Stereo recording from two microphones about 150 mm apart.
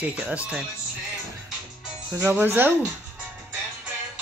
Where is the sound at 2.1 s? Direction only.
10° right (ahead or behind).